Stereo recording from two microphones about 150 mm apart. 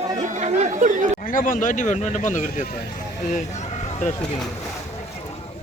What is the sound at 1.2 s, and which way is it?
Speech, 65° left (ahead or behind).